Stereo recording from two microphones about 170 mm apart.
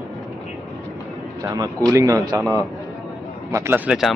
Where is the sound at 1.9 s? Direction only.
20° right (ahead or behind).